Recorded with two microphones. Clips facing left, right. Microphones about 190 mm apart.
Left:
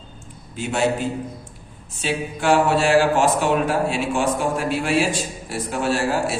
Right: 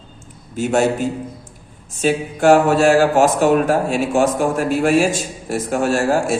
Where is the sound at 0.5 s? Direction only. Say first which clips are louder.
Right 5 dB; 45° right (ahead or behind).